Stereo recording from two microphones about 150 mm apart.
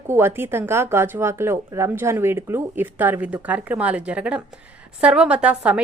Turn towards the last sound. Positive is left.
turn(degrees=-10)  # may be behind; listen again after turning